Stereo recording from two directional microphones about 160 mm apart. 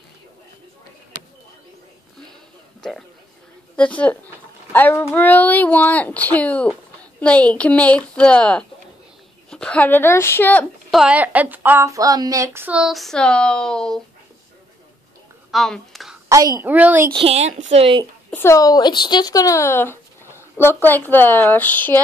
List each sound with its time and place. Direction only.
2.8 s a man's voice: 5° left (ahead or behind)
10.9 s a woman's voice: 5° right (ahead or behind)
15.5 s a sound: centre (ahead or behind)
16.3 s a woman's voice: 20° right (ahead or behind)
17.1 s a woman's voice: 40° right (ahead or behind)
18.3 s speech: 15° left (ahead or behind)